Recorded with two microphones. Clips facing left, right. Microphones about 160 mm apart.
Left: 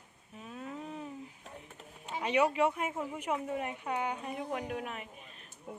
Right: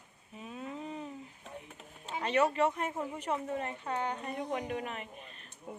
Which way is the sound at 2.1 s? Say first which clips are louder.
Even; 10° left (ahead or behind).